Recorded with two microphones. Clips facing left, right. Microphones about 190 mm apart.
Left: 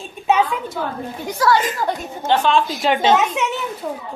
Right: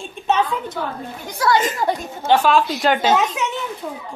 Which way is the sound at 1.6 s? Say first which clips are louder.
Right 1 dB; 25° right (ahead or behind).